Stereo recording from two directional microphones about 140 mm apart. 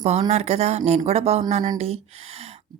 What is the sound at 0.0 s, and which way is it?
A woman's voice, 50° right (ahead or behind).